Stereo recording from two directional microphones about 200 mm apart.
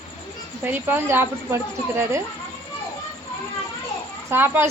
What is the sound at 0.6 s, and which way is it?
A woman's voice, 10° right (ahead or behind).